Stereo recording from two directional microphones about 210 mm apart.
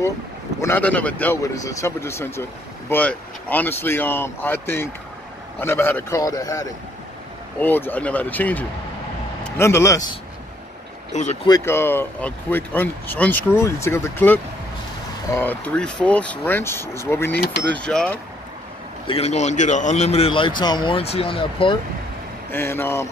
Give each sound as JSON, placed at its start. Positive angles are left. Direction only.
{"t": 0.6, "sound": "speech", "side_deg": 10}
{"t": 11.1, "sound": "speech", "side_deg": 35}
{"t": 11.4, "sound": "speech", "side_deg": 15}
{"t": 19.0, "sound": "a man's voice", "side_deg": 30}
{"t": 22.5, "sound": "speech", "side_deg": 10}